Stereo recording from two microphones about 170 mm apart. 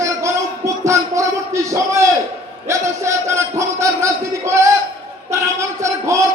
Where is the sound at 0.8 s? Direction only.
15° right (ahead or behind).